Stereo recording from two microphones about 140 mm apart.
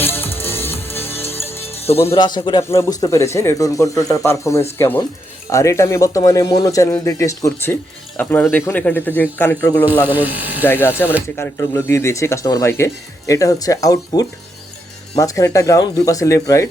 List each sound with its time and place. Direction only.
0.0 s music: 15° left (ahead or behind)
1.5 s music: 45° left (ahead or behind)
2.1 s a man's voice: 30° left (ahead or behind); by 9.8 s 15° left (ahead or behind)
10.1 s speech: 10° right (ahead or behind)
10.6 s a man's voice: 15° left (ahead or behind)